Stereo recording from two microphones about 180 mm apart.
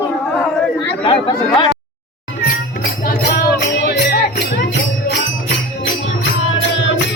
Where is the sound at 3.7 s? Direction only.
60° left (ahead or behind).